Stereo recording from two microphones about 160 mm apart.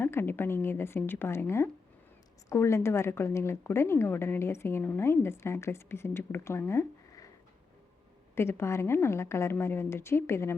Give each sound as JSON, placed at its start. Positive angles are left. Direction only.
{"t": 0.0, "sound": "a woman's voice", "side_deg": 15}
{"t": 8.4, "sound": "a woman's voice", "side_deg": 15}